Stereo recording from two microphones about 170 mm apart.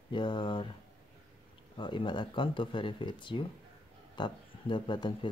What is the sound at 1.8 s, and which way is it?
Speech, 30° left (ahead or behind).